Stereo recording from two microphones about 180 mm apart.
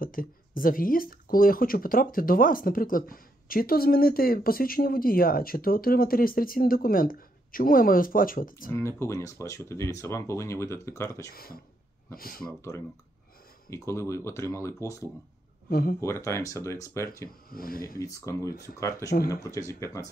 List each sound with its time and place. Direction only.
0.0 s speech: 50° left (ahead or behind)
8.7 s speech: 15° left (ahead or behind)
11.2 s speech: 55° left (ahead or behind)
13.7 s speech: 15° left (ahead or behind)
15.7 s speech: 55° left (ahead or behind)
16.0 s speech: 15° left (ahead or behind)
17.5 s speech: 55° left (ahead or behind)
17.9 s speech: 15° left (ahead or behind)